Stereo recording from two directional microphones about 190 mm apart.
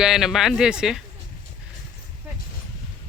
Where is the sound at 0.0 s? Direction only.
Centre (ahead or behind).